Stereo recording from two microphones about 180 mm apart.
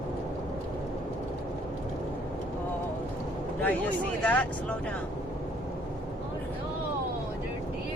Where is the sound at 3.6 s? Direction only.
10° left (ahead or behind).